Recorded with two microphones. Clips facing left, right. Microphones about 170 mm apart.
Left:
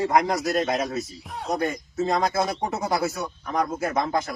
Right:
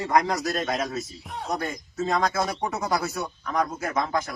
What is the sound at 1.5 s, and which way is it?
Speech, 20° left (ahead or behind).